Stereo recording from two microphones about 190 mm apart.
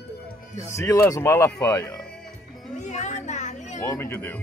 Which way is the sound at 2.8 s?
40° left (ahead or behind).